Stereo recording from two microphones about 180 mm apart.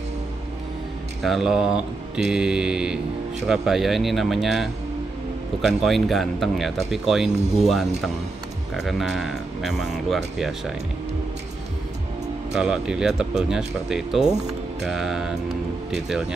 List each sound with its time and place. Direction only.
1.2 s speech: centre (ahead or behind)
5.9 s speech: centre (ahead or behind)
7.2 s speech: 40° right (ahead or behind)
7.6 s speech: centre (ahead or behind)
12.5 s speech: 5° right (ahead or behind)